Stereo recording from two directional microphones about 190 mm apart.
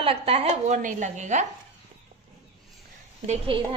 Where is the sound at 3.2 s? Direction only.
35° right (ahead or behind).